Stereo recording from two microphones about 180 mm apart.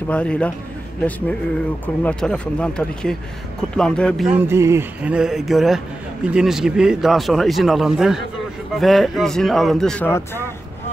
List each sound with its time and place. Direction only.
0.1 s a man's voice: 5° left (ahead or behind)
2.0 s a man's voice: 5° left (ahead or behind)
4.3 s a man's voice: 15° right (ahead or behind); by 10.4 s 10° left (ahead or behind)